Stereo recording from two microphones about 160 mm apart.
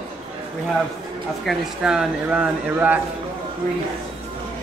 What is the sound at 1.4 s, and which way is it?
Speech, centre (ahead or behind).